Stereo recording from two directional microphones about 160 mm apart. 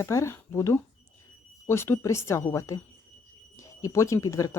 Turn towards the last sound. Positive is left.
turn(degrees=20)  # may be behind; listen again after turning